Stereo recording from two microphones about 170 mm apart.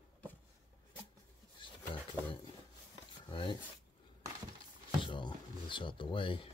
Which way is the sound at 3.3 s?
30° left (ahead or behind).